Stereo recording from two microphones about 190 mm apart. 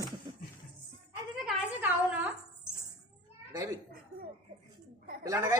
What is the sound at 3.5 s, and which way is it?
Speech, 15° right (ahead or behind).